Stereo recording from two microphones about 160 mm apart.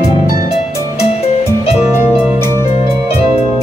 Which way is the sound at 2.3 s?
20° right (ahead or behind).